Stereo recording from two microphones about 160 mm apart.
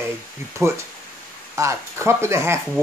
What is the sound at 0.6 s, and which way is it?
Speech, 15° right (ahead or behind).